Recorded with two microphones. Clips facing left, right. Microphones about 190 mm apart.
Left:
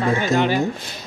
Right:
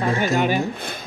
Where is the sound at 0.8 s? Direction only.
55° right (ahead or behind).